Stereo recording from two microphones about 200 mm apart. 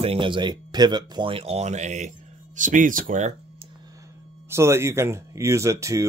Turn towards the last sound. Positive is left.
turn(degrees=-15)  # may be behind; listen again after turning